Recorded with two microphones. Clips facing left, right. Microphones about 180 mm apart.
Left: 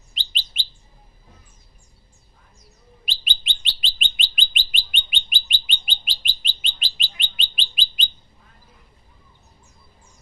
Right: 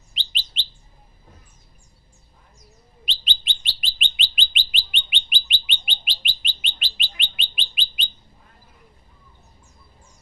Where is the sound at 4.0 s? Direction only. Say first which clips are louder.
Right 2 dB; 45° left (ahead or behind).